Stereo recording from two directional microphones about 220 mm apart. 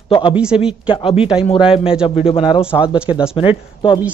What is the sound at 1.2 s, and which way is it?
Speech, 5° right (ahead or behind).